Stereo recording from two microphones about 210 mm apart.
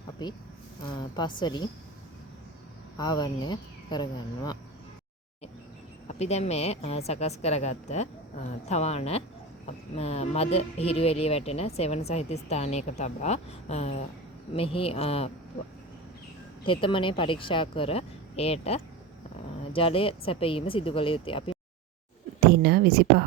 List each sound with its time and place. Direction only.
0.2 s speech: 20° left (ahead or behind)
3.0 s speech: 20° left (ahead or behind)
6.1 s speech: 30° left (ahead or behind)
16.6 s speech: 25° left (ahead or behind)
22.4 s a sound: 50° right (ahead or behind)